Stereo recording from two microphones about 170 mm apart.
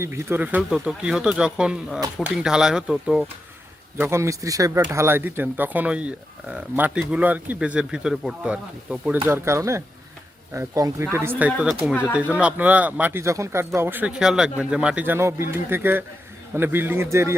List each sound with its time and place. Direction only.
0.0 s speech: 15° right (ahead or behind)
3.9 s speech: 15° right (ahead or behind)